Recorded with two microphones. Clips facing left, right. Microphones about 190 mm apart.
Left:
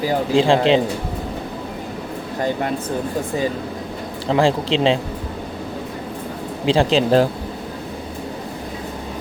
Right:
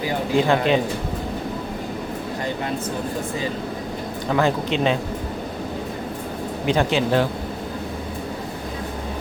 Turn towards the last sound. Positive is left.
turn(degrees=35)  # may be behind; listen again after turning